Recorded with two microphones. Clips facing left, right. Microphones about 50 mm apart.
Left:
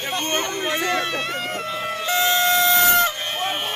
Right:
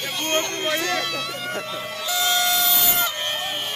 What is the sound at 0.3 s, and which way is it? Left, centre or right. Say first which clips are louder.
Speech: right 2 dB; centre.